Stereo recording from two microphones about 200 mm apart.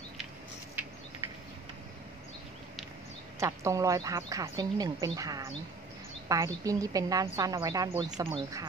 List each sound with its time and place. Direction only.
3.3 s a woman's voice: 15° right (ahead or behind)